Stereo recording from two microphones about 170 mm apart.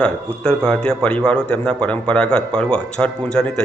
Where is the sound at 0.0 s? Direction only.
5° left (ahead or behind).